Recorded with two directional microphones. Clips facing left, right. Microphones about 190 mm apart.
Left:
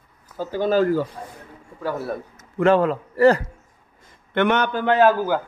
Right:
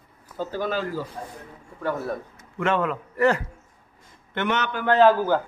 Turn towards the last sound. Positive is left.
turn(degrees=10)  # may be behind; listen again after turning